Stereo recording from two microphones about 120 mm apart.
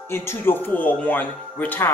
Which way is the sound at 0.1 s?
20° left (ahead or behind).